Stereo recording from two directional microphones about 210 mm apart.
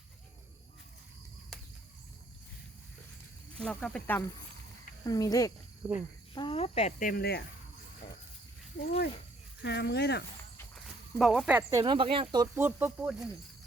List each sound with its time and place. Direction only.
3.6 s speech: 5° left (ahead or behind)
5.0 s speech: 15° left (ahead or behind)
5.8 s speech: 10° right (ahead or behind)
6.3 s speech: 25° left (ahead or behind); by 7.4 s 50° left (ahead or behind)
9.6 s speech: 55° left (ahead or behind)
11.2 s speech: centre (ahead or behind)